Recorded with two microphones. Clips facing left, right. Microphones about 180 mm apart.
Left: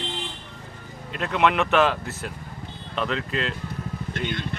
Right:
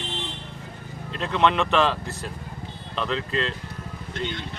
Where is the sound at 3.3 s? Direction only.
30° right (ahead or behind).